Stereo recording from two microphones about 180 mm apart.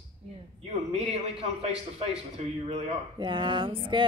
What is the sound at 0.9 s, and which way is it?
Speech, 35° right (ahead or behind).